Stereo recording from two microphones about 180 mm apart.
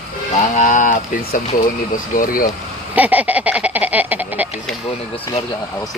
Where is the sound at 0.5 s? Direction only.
45° left (ahead or behind).